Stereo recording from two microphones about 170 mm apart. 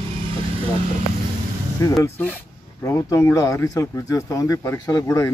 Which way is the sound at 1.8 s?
20° left (ahead or behind).